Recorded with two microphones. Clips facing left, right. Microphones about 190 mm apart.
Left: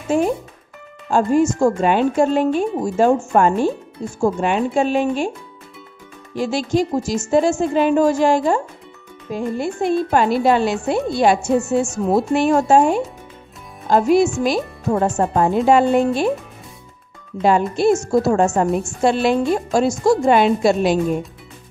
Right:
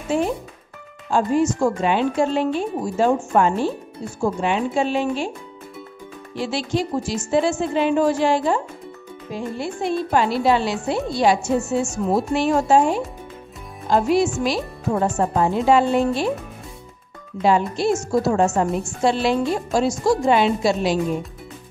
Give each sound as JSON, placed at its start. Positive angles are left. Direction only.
{"t": 0.1, "sound": "a woman's voice", "side_deg": 45}
{"t": 6.3, "sound": "a woman's voice", "side_deg": 45}
{"t": 12.4, "sound": "a woman's voice", "side_deg": 50}
{"t": 17.4, "sound": "a woman's voice", "side_deg": 50}